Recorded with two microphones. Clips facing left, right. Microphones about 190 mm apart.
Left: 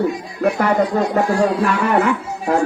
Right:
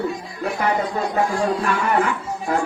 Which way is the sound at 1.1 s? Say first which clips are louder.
Left 4 dB; 65° left (ahead or behind).